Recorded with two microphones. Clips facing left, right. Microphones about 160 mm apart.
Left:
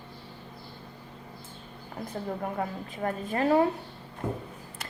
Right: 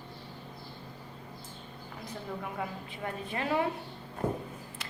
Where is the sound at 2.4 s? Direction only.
45° left (ahead or behind).